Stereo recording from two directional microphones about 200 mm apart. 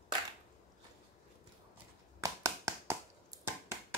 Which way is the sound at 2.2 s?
15° right (ahead or behind).